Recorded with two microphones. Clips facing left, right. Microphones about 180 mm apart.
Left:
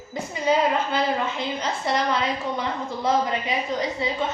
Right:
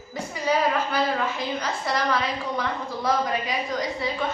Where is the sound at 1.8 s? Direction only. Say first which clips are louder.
Left 2 dB; 25° left (ahead or behind).